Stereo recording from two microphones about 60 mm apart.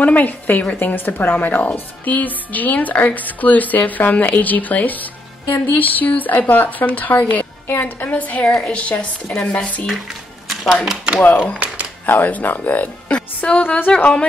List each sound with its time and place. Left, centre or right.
0.0 s speech: left
11.2 s speech: left
11.6 s a sound: right
12.1 s speech: left